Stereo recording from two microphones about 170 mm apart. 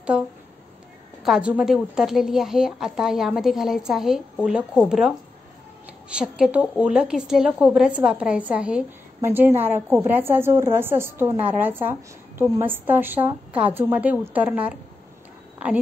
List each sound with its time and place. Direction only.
1.2 s a woman's voice: 5° right (ahead or behind)